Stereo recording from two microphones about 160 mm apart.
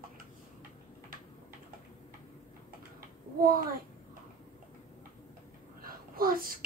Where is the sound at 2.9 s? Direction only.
65° right (ahead or behind).